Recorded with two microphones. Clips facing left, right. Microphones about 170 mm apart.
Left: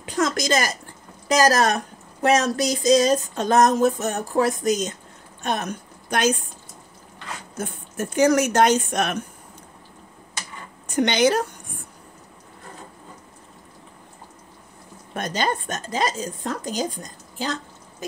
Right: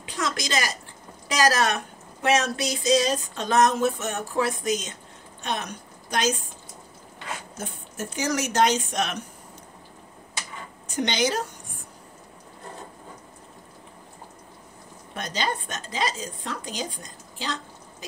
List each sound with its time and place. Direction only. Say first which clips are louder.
0.0 s a sound: left 6 dB; 45° left (ahead or behind)
5.4 s speech: left 5 dB; 50° left (ahead or behind)
7.5 s speech: left 5 dB; 55° left (ahead or behind)
11.0 s a woman's voice: left 6 dB; 60° left (ahead or behind)
15.1 s speech: left 4 dB; 50° left (ahead or behind)